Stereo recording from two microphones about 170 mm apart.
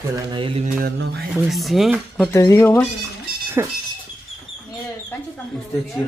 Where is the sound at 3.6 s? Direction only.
15° right (ahead or behind).